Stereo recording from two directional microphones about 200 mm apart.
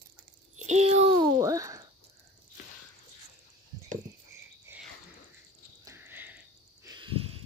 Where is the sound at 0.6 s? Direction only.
35° right (ahead or behind).